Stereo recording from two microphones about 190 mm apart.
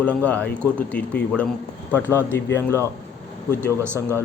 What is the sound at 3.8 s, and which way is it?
Speech, 10° right (ahead or behind).